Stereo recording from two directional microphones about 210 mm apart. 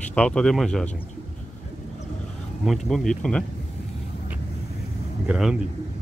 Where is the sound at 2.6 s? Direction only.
Centre (ahead or behind).